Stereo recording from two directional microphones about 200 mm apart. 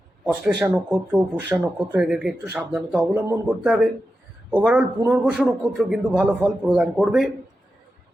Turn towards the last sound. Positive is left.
turn(degrees=0)  # may be behind; listen again after turning